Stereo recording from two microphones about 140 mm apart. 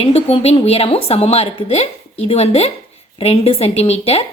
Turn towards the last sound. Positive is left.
turn(degrees=45)  # may be behind; listen again after turning